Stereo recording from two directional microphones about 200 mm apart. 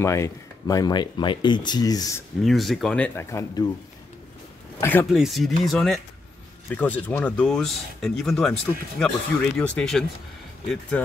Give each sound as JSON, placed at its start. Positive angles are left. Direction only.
{"t": 0.0, "sound": "speech", "side_deg": 15}
{"t": 2.4, "sound": "speech", "side_deg": 0}
{"t": 4.7, "sound": "speech", "side_deg": 10}
{"t": 5.0, "sound": "speech", "side_deg": 0}